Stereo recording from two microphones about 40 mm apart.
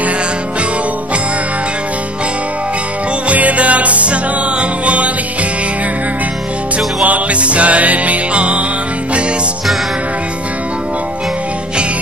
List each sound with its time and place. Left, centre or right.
3.3 s music: right
7.0 s music: right